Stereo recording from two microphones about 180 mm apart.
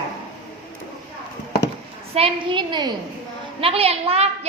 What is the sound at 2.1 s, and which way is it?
A woman's voice, 30° right (ahead or behind).